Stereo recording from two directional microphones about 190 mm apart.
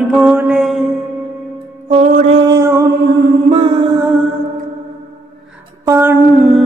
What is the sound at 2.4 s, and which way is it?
Music, 15° right (ahead or behind).